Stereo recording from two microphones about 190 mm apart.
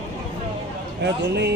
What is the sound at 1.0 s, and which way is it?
Speech, 60° right (ahead or behind).